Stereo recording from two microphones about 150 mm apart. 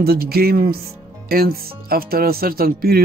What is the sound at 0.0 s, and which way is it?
Speech, 90° right.